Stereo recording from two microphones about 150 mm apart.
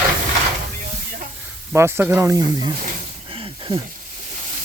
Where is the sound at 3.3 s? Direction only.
35° right (ahead or behind).